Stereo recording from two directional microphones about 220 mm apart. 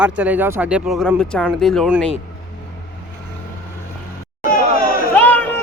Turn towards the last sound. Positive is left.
turn(degrees=10)  # may be behind; listen again after turning